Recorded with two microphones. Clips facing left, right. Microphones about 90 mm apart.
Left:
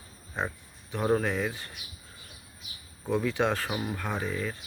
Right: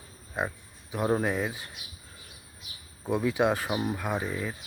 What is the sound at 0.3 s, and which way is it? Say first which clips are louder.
Speech: right 1 dB; 10° right (ahead or behind).